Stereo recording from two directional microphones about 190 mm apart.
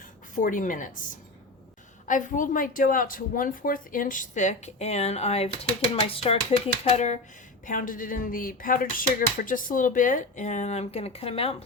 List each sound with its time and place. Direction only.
0.3 s speech: 45° left (ahead or behind)